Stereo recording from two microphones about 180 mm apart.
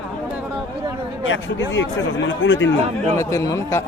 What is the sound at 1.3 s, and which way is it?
Speech, 90° left.